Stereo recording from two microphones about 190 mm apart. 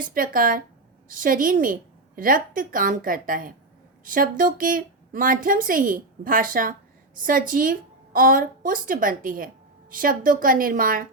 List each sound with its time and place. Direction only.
0.0 s a woman's voice: 45° right (ahead or behind)